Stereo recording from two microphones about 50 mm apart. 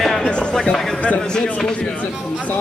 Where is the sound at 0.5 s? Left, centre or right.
Centre.